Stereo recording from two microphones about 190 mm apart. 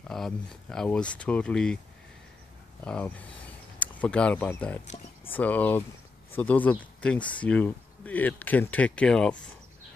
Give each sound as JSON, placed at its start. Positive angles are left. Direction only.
{"t": 0.1, "sound": "speech", "side_deg": 0}
{"t": 2.8, "sound": "speech", "side_deg": 5}
{"t": 4.8, "sound": "a sound", "side_deg": 35}
{"t": 5.3, "sound": "speech", "side_deg": 10}